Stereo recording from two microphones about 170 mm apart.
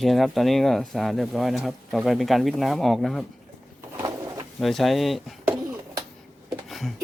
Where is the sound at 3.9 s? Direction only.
20° right (ahead or behind).